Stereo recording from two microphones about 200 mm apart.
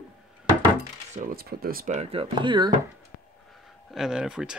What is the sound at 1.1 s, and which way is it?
Speech, 45° right (ahead or behind).